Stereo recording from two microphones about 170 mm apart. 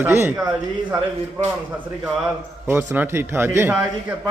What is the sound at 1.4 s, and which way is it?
Speech, 5° right (ahead or behind).